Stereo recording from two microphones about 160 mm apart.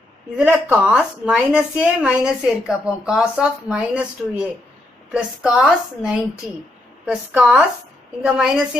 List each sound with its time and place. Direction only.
0.4 s a woman's voice: 10° right (ahead or behind)